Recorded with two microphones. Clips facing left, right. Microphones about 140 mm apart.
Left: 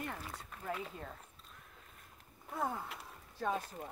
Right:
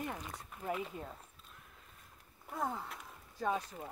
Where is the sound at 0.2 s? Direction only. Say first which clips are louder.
Even; centre (ahead or behind).